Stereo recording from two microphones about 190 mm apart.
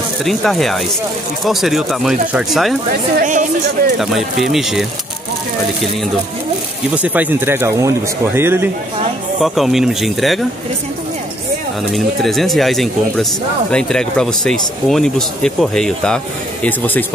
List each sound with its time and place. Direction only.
0.2 s speech: centre (ahead or behind)
3.2 s a woman's voice: 40° right (ahead or behind)
4.0 s speech: centre (ahead or behind)
7.0 s speech: 10° right (ahead or behind)
9.4 s speech: centre (ahead or behind)
11.9 s speech: centre (ahead or behind)